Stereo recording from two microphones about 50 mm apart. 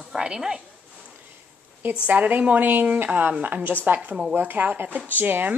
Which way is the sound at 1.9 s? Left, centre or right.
Right.